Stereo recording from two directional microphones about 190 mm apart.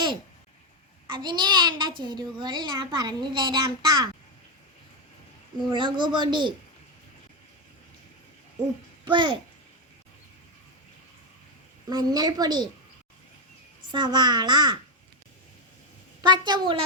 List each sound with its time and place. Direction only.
1.1 s a child's voice: 25° right (ahead or behind)
5.7 s a child's voice: 25° right (ahead or behind)
9.0 s a child's voice: 25° right (ahead or behind)
11.9 s a child's voice: 20° right (ahead or behind)
13.9 s a child's voice: 25° right (ahead or behind)
16.2 s a child's voice: 25° right (ahead or behind)